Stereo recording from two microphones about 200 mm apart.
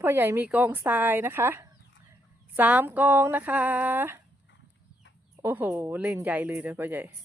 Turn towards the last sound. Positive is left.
turn(degrees=-10)  # may be behind; listen again after turning